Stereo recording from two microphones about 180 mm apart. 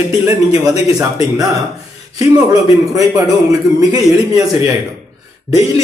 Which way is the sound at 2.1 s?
20° right (ahead or behind).